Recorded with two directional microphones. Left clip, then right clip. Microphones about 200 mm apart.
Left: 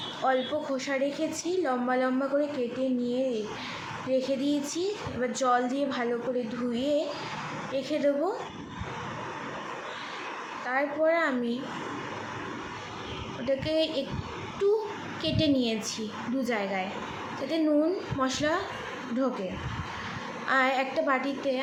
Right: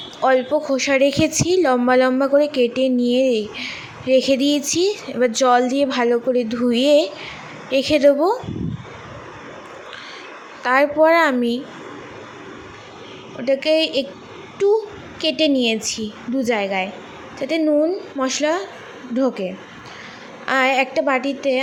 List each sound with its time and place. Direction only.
0.2 s a woman's voice: 40° right (ahead or behind)
10.7 s a woman's voice: 50° right (ahead or behind)
13.4 s a woman's voice: 40° right (ahead or behind)
20.5 s a woman's voice: 40° right (ahead or behind)